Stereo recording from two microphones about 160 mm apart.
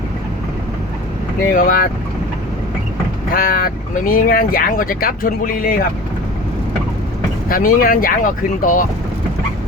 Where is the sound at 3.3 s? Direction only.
65° left (ahead or behind).